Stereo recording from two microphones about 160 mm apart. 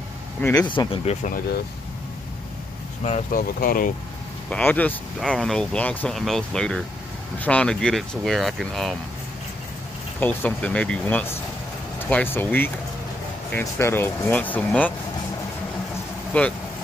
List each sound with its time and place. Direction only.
0.6 s speech: 30° left (ahead or behind)
1.2 s speech: 65° left (ahead or behind)
3.0 s speech: 45° left (ahead or behind)
3.3 s speech: 65° left (ahead or behind)
4.5 s speech: 10° left (ahead or behind)
10.2 s speech: 10° left (ahead or behind)
16.3 s speech: 10° left (ahead or behind)